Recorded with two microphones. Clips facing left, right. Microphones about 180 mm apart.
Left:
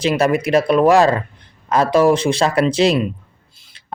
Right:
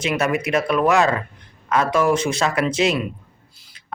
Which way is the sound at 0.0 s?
35° left (ahead or behind).